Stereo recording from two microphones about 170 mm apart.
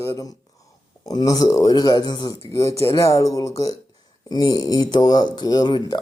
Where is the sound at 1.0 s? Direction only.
20° left (ahead or behind).